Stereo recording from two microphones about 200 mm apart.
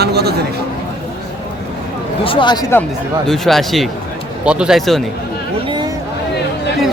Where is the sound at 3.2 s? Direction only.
Centre (ahead or behind).